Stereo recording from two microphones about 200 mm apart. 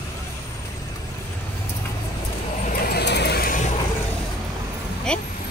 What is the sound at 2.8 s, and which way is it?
Vehicle, 50° left (ahead or behind).